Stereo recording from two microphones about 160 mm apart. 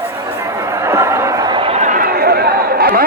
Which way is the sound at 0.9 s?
15° right (ahead or behind).